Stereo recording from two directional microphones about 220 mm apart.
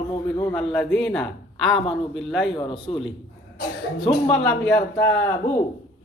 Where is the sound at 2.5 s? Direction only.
25° left (ahead or behind).